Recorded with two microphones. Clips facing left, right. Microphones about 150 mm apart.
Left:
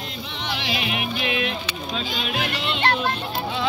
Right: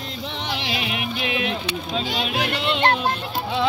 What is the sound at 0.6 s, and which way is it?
Music, 25° right (ahead or behind).